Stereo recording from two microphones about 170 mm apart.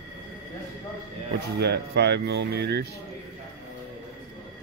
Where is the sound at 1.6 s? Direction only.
75° right (ahead or behind).